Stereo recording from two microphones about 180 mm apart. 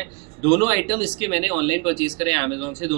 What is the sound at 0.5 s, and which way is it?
Speech, 30° right (ahead or behind).